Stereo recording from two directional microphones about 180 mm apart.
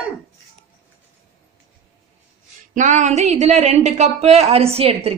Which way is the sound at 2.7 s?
45° right (ahead or behind).